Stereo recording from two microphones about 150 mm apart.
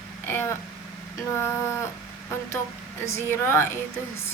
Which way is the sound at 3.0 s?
20° left (ahead or behind).